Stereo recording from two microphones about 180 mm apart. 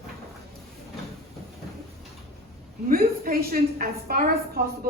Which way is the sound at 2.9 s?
55° right (ahead or behind).